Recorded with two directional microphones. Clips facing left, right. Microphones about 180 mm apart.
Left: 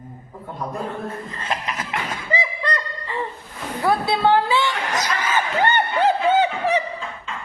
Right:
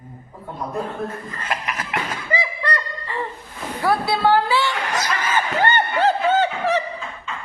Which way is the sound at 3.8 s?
20° left (ahead or behind).